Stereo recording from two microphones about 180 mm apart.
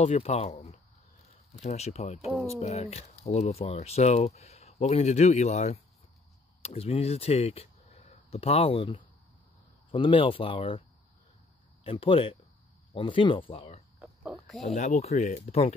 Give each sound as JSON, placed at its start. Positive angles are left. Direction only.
{"t": 0.0, "sound": "speech", "side_deg": 40}
{"t": 11.8, "sound": "speech", "side_deg": 30}
{"t": 14.0, "sound": "pig", "side_deg": -5}
{"t": 14.7, "sound": "speech", "side_deg": 40}